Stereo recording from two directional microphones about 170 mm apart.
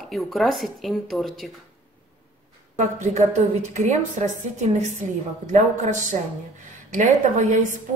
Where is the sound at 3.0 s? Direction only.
40° right (ahead or behind).